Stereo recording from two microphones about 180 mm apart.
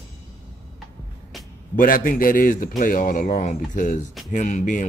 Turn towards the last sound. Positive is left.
turn(degrees=40)  # may be behind; listen again after turning